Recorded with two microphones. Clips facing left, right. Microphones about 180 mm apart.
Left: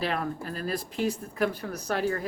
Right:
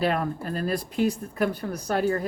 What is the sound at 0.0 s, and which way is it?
Speech, 45° right (ahead or behind).